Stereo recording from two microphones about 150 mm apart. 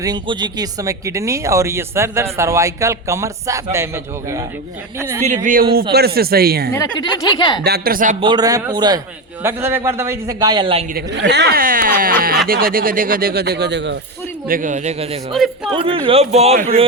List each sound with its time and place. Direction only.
0.0 s a man's voice: 30° right (ahead or behind)
5.2 s speech: 55° right (ahead or behind)
5.9 s speech: 90° right
6.7 s a woman's voice: 25° left (ahead or behind)
7.6 s speech: 85° right
8.2 s speech: 30° right (ahead or behind)
9.4 s a man's voice: 15° right (ahead or behind); by 10.8 s 35° right (ahead or behind)
11.4 s speech: 75° right (ahead or behind)
14.4 s a man's voice: 65° right (ahead or behind); by 15.2 s 45° right (ahead or behind)
15.3 s speech: centre (ahead or behind)
15.7 s a man's voice: 35° right (ahead or behind)